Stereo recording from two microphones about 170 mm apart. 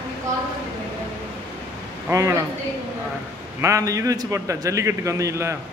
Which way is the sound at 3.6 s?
20° right (ahead or behind).